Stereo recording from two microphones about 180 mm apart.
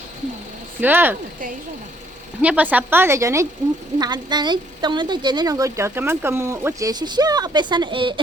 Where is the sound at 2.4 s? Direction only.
10° right (ahead or behind).